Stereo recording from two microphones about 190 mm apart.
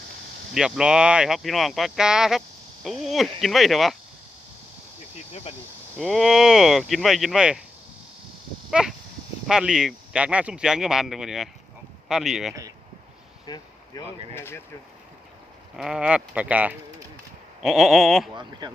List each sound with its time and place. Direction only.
0.5 s speech: 5° right (ahead or behind)
6.0 s speech: centre (ahead or behind)
8.7 s a sound: 5° right (ahead or behind)
9.5 s speech: 5° right (ahead or behind)
13.4 s speech: 20° left (ahead or behind)
15.7 s speech: 5° right (ahead or behind)